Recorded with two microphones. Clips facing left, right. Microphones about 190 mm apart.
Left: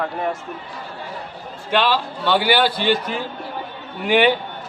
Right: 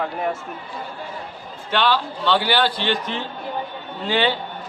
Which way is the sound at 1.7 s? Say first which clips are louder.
Left 1 dB; 10° left (ahead or behind).